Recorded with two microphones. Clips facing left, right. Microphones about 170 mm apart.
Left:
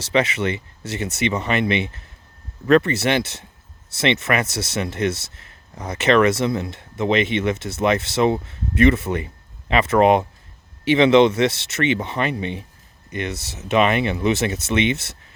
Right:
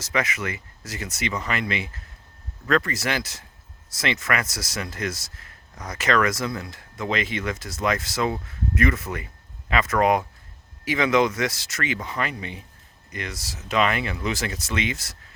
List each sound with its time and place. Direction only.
0.0 s speech: 30° left (ahead or behind)